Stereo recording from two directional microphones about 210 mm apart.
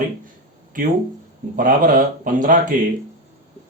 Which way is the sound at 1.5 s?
40° right (ahead or behind).